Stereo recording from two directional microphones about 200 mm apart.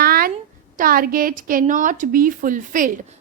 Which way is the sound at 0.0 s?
50° right (ahead or behind).